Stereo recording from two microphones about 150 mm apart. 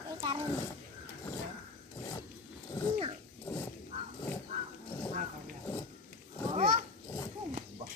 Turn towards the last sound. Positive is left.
turn(degrees=-45)  # may be behind; listen again after turning